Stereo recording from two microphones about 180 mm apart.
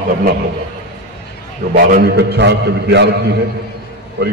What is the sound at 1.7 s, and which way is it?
A man's voice, 55° right (ahead or behind).